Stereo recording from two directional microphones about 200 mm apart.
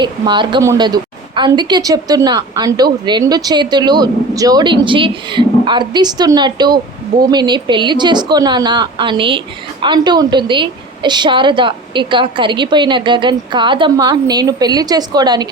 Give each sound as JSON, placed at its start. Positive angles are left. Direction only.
{"t": 0.0, "sound": "a woman's voice", "side_deg": -25}